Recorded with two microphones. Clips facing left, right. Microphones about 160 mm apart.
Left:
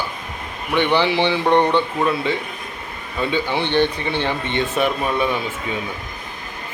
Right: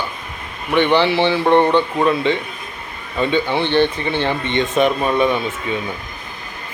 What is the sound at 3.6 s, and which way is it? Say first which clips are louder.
A man's voice: right 2 dB; 15° left (ahead or behind).